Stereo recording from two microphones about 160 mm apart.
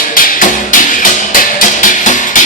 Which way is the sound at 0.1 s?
60° left (ahead or behind).